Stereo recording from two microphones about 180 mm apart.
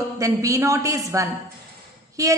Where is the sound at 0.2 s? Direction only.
15° right (ahead or behind).